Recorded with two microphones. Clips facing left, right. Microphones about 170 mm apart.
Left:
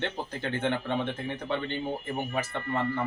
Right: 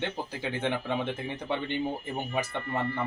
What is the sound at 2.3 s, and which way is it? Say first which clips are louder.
Speech: right 2 dB; 15° right (ahead or behind).